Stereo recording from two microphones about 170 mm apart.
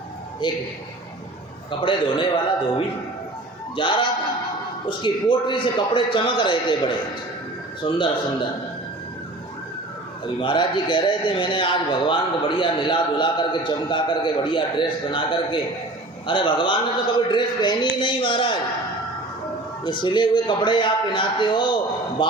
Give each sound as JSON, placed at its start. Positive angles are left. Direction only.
{"t": 0.4, "sound": "a man's voice", "side_deg": 25}
{"t": 1.8, "sound": "a man's voice", "side_deg": 30}
{"t": 10.4, "sound": "a man's voice", "side_deg": 25}
{"t": 19.8, "sound": "a man's voice", "side_deg": 30}